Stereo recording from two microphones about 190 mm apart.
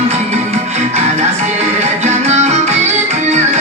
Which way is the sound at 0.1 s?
35° right (ahead or behind).